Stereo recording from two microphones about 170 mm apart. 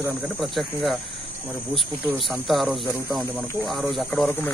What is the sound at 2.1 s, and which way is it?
Speech, centre (ahead or behind).